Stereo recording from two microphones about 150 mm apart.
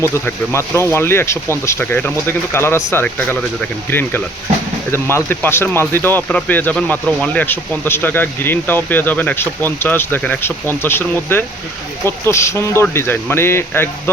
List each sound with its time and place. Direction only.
0.0 s speech: 15° left (ahead or behind)